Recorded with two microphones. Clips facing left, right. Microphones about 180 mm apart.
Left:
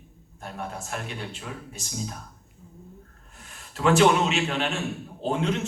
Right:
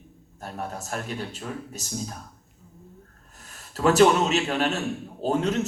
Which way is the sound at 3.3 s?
40° right (ahead or behind).